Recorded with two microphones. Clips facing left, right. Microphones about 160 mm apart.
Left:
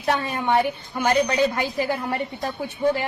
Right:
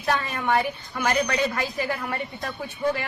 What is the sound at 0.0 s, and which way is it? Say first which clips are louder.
A woman's voice: left 2 dB; 25° left (ahead or behind).